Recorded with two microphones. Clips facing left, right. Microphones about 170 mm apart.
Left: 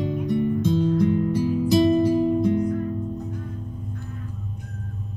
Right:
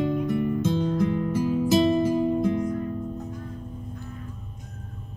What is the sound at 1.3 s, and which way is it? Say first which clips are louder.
Music: right 2 dB; 50° right (ahead or behind).